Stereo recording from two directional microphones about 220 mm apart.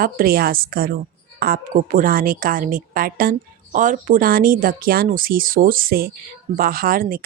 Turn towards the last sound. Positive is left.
turn(degrees=-40)  # may be behind; listen again after turning